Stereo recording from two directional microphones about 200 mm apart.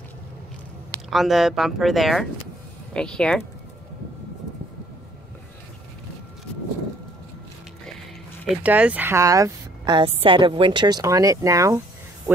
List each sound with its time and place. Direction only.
1.1 s speech: centre (ahead or behind)
8.5 s a woman's voice: 5° right (ahead or behind)